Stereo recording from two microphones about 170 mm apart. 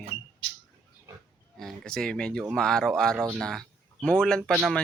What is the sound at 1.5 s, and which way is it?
Speech, 5° left (ahead or behind).